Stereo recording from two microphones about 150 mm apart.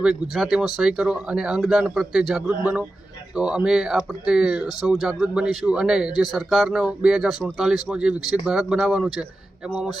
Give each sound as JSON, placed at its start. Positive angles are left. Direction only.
{"t": 0.0, "sound": "a man's voice", "side_deg": 0}